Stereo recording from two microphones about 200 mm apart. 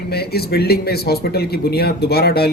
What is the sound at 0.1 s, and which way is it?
Speech, 50° left (ahead or behind).